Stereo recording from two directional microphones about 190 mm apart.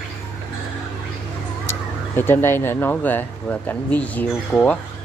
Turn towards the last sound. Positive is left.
turn(degrees=10)  # may be behind; listen again after turning